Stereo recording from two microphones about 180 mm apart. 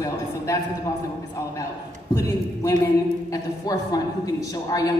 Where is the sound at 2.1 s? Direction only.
20° left (ahead or behind).